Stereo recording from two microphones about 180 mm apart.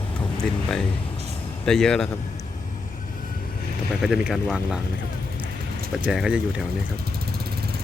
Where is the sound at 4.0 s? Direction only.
5° right (ahead or behind).